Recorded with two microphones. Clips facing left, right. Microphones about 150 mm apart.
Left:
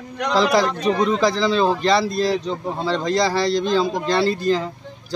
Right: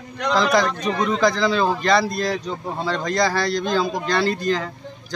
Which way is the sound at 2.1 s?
30° left (ahead or behind).